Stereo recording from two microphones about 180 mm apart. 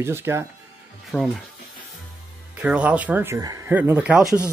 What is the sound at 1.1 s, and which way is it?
Speech, centre (ahead or behind).